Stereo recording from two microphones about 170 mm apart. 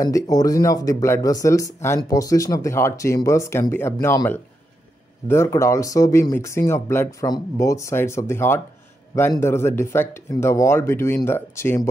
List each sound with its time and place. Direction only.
0.0 s speech: 20° left (ahead or behind)